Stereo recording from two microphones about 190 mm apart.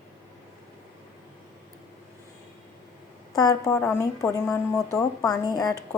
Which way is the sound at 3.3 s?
15° left (ahead or behind).